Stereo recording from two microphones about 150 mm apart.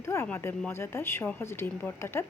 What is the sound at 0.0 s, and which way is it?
Speech, 15° left (ahead or behind).